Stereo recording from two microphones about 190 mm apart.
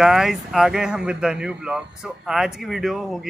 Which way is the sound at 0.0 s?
Centre (ahead or behind).